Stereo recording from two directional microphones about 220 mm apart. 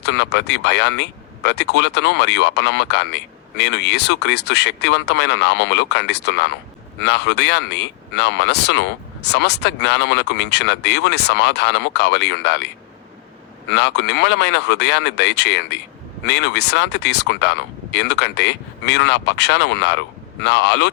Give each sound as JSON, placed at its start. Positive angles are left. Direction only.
{"t": 0.0, "sound": "speech", "side_deg": 50}